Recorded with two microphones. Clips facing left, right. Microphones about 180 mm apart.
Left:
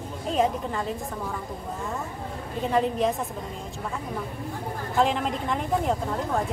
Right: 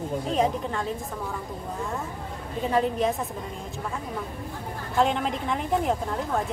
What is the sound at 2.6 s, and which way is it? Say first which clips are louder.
Speech: even; centre (ahead or behind).